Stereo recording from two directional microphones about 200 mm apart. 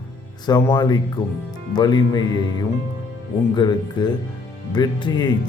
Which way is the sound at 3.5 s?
20° left (ahead or behind).